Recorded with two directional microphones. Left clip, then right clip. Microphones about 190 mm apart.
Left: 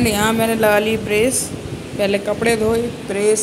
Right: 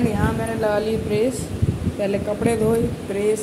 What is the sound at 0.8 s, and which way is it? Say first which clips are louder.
A woman's voice: left 4 dB; centre (ahead or behind).